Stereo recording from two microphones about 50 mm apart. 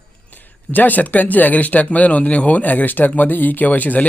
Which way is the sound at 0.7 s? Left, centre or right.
Left.